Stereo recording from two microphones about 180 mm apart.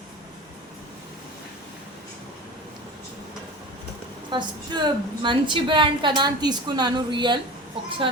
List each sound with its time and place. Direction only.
4.3 s a woman's voice: 25° right (ahead or behind)